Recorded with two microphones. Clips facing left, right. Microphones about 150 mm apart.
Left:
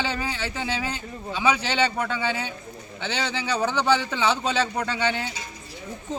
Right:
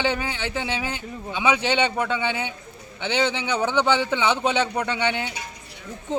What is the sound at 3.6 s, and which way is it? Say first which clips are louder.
Speech: right 1 dB; 15° right (ahead or behind).